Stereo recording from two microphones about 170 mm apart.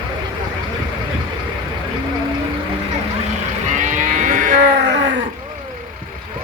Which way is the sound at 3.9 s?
50° right (ahead or behind).